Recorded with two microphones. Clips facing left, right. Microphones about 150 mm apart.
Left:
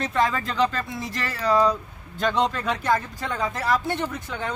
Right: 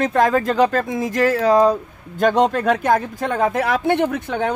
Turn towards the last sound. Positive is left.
turn(degrees=-60)  # may be behind; listen again after turning